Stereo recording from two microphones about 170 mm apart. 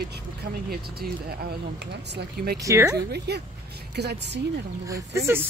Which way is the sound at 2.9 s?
70° right (ahead or behind).